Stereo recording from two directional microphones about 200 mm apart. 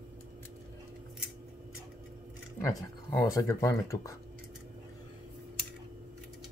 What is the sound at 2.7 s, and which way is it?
Speech, 15° left (ahead or behind).